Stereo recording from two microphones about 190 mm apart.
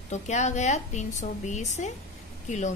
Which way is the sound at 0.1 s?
40° left (ahead or behind).